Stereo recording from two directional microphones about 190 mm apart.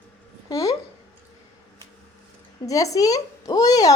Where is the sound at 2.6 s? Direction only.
15° left (ahead or behind).